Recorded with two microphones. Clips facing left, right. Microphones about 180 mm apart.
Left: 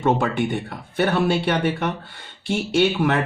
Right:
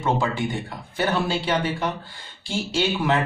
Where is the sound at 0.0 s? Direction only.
60° left (ahead or behind).